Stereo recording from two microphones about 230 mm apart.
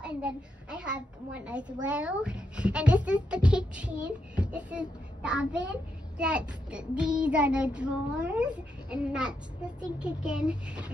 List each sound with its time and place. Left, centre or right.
0.0 s a child's voice: centre